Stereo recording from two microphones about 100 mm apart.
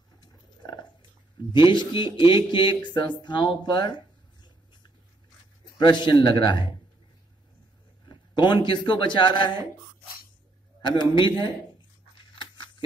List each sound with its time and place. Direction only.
0.2 s wild animals: 45° left (ahead or behind)
1.5 s a man's voice: 50° left (ahead or behind)
8.0 s a man's voice: 45° left (ahead or behind)
10.8 s a man's voice: 50° left (ahead or behind)
12.4 s a sound: 50° left (ahead or behind)